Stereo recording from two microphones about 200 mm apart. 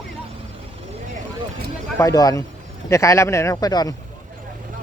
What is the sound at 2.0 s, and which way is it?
Speech, 15° left (ahead or behind).